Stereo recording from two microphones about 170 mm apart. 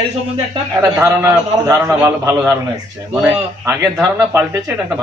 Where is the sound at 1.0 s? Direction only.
15° right (ahead or behind).